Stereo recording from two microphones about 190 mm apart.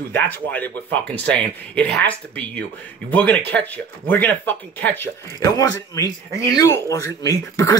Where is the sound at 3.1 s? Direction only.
10° left (ahead or behind).